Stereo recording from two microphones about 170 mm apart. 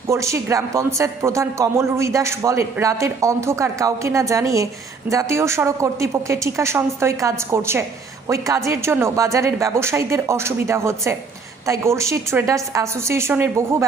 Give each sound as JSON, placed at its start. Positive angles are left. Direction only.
{"t": 0.1, "sound": "speech", "side_deg": -15}